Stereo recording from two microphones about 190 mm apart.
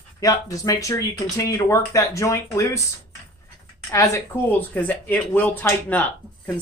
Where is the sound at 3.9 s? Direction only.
15° left (ahead or behind).